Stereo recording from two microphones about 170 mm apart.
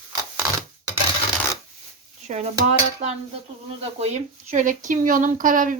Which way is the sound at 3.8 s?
40° right (ahead or behind).